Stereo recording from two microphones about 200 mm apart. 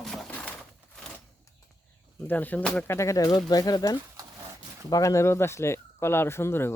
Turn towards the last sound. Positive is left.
turn(degrees=10)  # may be behind; listen again after turning